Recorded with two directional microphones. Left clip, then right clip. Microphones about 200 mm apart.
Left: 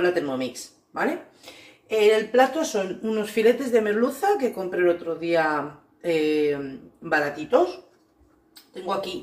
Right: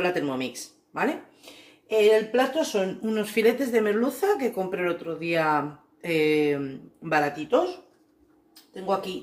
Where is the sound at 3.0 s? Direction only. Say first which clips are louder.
Left 3 dB; 45° right (ahead or behind).